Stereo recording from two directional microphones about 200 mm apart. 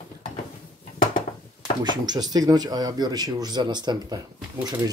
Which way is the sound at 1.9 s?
20° right (ahead or behind).